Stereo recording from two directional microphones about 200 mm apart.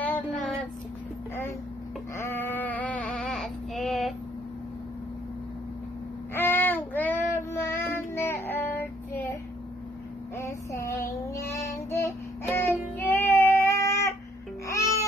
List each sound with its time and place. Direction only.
2.1 s sheep: 10° left (ahead or behind)
6.3 s child singing: 10° left (ahead or behind)
10.3 s a sound: 15° left (ahead or behind)
11.9 s music: 10° left (ahead or behind)
13.1 s child singing: 10° left (ahead or behind)
14.7 s music: 15° left (ahead or behind)